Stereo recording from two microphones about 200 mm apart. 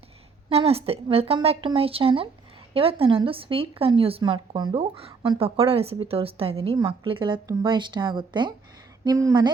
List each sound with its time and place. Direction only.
0.5 s speech: 30° right (ahead or behind)